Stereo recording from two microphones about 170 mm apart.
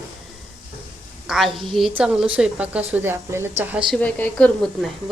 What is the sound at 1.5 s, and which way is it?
Speech, centre (ahead or behind).